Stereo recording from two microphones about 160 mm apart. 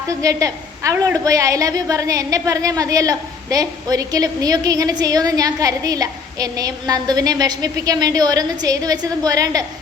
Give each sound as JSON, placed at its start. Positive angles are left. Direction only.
{"t": 0.1, "sound": "a woman's voice", "side_deg": -20}